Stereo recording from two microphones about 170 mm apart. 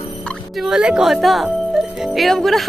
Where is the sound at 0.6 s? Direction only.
5° right (ahead or behind).